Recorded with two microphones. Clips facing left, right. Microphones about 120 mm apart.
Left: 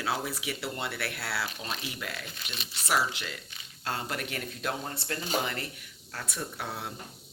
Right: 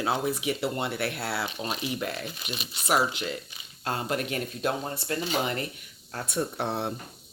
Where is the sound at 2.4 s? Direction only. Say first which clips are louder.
Right 4 dB; 15° right (ahead or behind); by 6.9 s 30° right (ahead or behind).